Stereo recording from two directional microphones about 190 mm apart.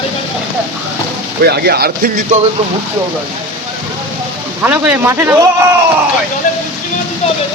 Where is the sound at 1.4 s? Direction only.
55° right (ahead or behind).